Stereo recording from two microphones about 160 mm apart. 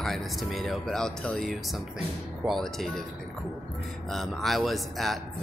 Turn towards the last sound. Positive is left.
turn(degrees=0)  # may be behind; listen again after turning